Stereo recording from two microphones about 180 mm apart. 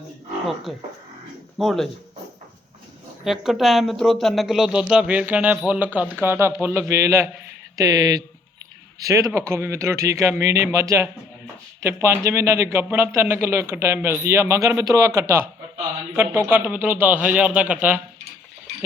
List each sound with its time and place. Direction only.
0.7 s speech: centre (ahead or behind)
3.2 s speech: centre (ahead or behind)